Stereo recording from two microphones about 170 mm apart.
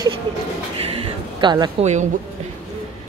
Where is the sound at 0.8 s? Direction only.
35° right (ahead or behind).